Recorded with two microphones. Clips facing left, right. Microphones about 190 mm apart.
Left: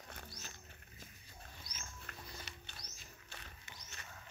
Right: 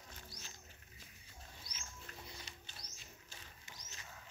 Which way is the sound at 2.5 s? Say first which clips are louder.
Left 2 dB; 65° left (ahead or behind).